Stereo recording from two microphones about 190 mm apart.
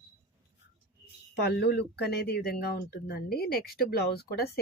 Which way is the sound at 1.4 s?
60° left (ahead or behind).